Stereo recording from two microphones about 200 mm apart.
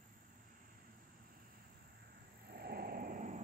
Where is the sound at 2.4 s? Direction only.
50° right (ahead or behind).